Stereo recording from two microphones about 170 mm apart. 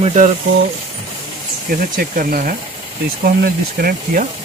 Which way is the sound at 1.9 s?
55° right (ahead or behind).